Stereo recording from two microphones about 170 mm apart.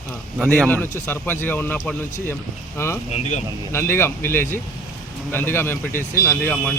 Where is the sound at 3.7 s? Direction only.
15° left (ahead or behind).